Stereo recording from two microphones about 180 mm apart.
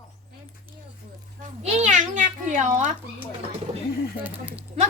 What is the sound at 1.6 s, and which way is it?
A woman's voice, 40° right (ahead or behind).